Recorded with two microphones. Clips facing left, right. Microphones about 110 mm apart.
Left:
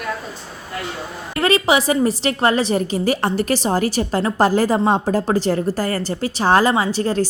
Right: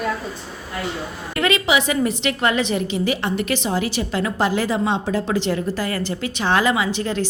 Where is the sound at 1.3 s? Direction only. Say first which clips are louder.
Left 3 dB; 35° left (ahead or behind).